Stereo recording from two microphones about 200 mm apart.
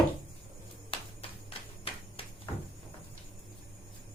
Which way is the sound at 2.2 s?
30° left (ahead or behind).